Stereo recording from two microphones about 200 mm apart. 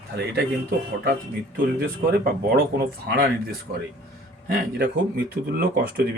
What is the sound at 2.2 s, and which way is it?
Speech, 50° right (ahead or behind).